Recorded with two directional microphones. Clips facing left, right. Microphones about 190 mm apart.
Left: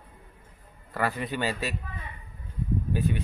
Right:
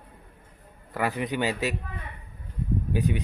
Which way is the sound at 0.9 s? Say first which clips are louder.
Right 2 dB; 15° right (ahead or behind).